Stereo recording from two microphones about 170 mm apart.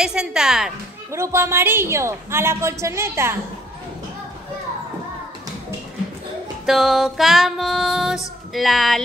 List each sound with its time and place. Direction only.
0.0 s female singing: 5° right (ahead or behind)
1.1 s a woman's voice: 15° right (ahead or behind)
6.6 s female singing: centre (ahead or behind)